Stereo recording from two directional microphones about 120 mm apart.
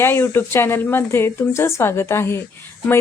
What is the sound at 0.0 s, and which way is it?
A woman's voice, 20° left (ahead or behind).